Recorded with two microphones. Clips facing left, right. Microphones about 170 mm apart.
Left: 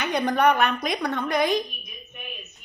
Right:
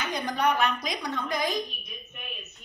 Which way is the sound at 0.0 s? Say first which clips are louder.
Left 6 dB; 65° left (ahead or behind).